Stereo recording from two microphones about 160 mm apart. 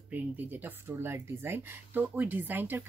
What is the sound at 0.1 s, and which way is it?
Speech, 10° right (ahead or behind).